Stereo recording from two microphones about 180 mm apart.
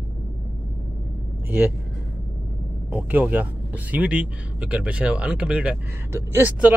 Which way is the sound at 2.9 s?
10° right (ahead or behind).